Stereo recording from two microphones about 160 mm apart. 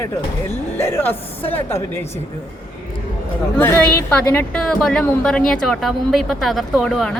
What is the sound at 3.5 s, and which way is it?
Speech, 15° left (ahead or behind).